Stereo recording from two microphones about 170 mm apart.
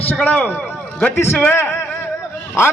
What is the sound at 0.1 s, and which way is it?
A man's voice, 10° left (ahead or behind).